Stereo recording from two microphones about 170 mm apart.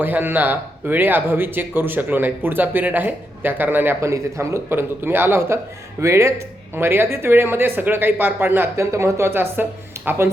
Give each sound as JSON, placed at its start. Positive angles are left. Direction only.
{"t": 0.0, "sound": "speech", "side_deg": -10}